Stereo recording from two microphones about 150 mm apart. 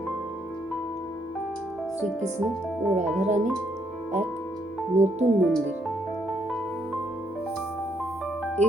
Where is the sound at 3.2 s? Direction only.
50° right (ahead or behind).